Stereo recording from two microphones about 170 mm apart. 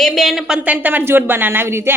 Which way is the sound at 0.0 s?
Centre (ahead or behind).